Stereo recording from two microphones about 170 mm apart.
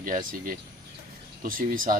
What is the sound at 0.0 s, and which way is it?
A man's voice, 55° right (ahead or behind).